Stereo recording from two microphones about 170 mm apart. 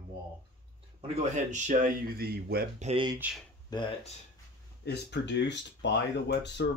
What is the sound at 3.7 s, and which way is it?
Speech, 30° left (ahead or behind).